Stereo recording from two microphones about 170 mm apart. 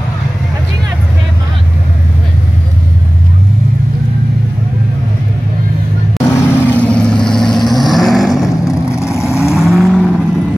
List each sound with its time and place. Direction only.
6.2 s vehicle: 10° left (ahead or behind)
8.8 s vehicle: 15° left (ahead or behind)
9.6 s vehicle: centre (ahead or behind)